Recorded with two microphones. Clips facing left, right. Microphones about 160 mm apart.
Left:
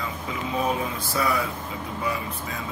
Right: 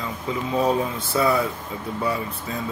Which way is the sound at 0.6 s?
30° right (ahead or behind).